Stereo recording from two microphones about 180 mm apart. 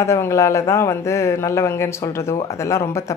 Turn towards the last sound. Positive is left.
turn(degrees=15)  # may be behind; listen again after turning